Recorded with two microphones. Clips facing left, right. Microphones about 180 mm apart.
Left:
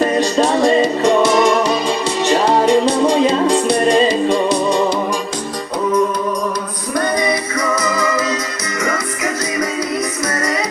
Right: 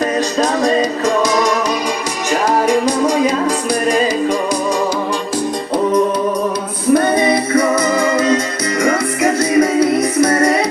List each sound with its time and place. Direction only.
0.0 s music: 30° left (ahead or behind)
2.6 s music: 10° right (ahead or behind)
3.1 s music: 25° left (ahead or behind)
6.9 s music: 30° right (ahead or behind)